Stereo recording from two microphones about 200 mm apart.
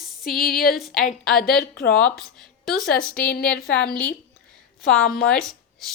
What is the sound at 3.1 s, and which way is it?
Speech, 50° left (ahead or behind).